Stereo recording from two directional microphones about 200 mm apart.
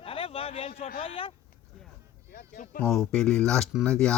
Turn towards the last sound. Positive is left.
turn(degrees=5)  # may be behind; listen again after turning